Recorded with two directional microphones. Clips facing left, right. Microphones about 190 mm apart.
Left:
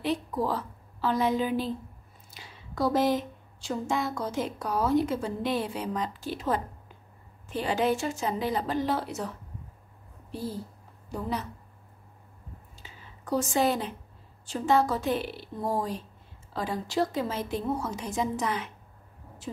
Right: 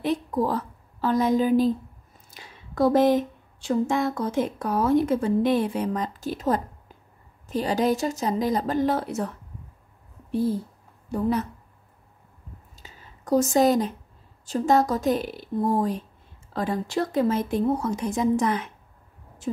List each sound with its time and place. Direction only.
0.0 s a woman's voice: 50° right (ahead or behind)
11.1 s a woman's voice: 50° right (ahead or behind)
12.7 s a sound: 40° right (ahead or behind)
14.4 s a woman's voice: 40° right (ahead or behind)